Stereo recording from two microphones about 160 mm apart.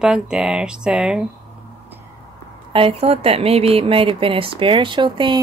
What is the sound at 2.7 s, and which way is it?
A woman's voice, 35° right (ahead or behind).